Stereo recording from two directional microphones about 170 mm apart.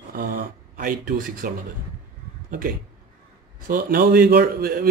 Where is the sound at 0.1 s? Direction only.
60° right (ahead or behind).